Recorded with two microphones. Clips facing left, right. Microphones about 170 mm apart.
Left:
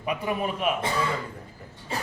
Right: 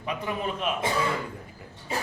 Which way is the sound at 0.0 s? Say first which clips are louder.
Left 3 dB; 10° left (ahead or behind).